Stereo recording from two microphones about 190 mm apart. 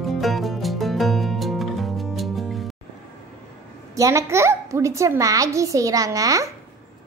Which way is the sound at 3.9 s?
15° right (ahead or behind).